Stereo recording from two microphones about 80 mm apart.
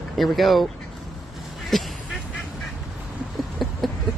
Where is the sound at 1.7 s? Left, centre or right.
Centre.